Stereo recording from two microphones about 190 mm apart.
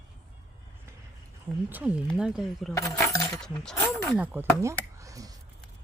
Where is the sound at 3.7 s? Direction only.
15° left (ahead or behind).